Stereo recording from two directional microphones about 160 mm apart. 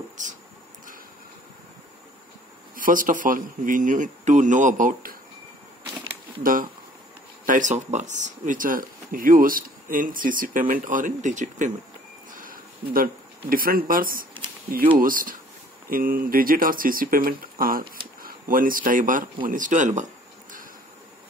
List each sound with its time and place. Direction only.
2.7 s speech: 60° right (ahead or behind)
6.4 s speech: 60° right (ahead or behind)
12.3 s a sound: 60° right (ahead or behind)
15.0 s speech: 60° right (ahead or behind)